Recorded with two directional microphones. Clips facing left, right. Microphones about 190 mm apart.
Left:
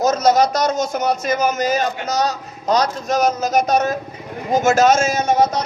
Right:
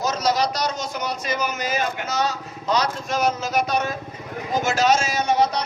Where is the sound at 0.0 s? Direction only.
45° left (ahead or behind).